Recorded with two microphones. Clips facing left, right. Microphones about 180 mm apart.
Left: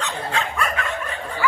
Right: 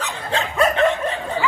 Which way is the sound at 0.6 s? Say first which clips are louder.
Right 9 dB; 30° right (ahead or behind).